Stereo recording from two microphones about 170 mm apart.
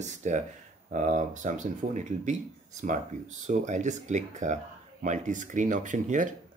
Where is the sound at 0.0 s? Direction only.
45° right (ahead or behind).